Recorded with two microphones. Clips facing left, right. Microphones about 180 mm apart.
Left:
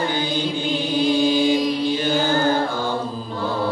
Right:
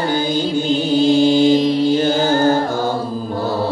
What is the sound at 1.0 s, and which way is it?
Mantra, 25° right (ahead or behind).